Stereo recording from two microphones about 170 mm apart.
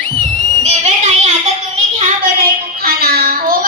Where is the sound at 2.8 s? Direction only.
65° right (ahead or behind).